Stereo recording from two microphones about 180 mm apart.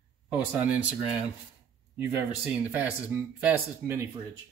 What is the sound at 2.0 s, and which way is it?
Speech, 10° right (ahead or behind).